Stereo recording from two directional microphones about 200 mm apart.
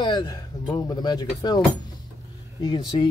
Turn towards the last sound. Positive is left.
turn(degrees=20)  # may be behind; listen again after turning